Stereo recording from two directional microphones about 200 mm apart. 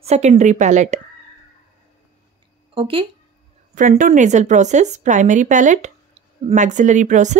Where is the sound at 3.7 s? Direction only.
40° right (ahead or behind).